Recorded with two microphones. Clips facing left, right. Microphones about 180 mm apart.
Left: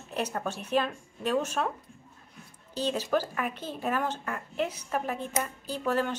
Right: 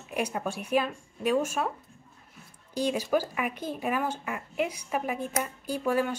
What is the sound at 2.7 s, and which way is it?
A woman's voice, 10° right (ahead or behind).